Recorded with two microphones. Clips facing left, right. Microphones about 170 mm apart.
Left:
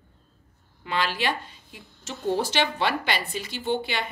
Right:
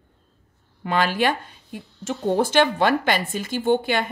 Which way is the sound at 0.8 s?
50° right (ahead or behind).